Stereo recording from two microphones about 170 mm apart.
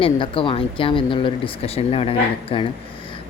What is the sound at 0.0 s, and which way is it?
Speech, 30° left (ahead or behind).